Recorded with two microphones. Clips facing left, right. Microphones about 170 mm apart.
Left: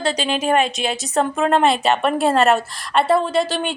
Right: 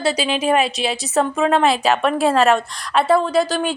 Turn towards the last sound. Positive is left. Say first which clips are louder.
# right 2 dB
turn(degrees=0)  # may be behind; listen again after turning